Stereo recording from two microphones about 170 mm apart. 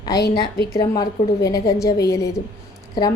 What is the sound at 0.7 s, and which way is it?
A woman's voice, 20° left (ahead or behind).